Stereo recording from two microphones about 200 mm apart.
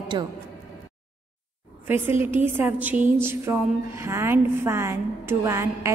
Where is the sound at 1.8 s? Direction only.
10° right (ahead or behind).